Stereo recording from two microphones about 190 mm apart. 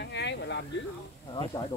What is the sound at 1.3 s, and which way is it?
Speech, 20° left (ahead or behind).